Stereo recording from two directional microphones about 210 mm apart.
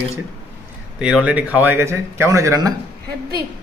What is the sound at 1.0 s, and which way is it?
Speech, 5° right (ahead or behind).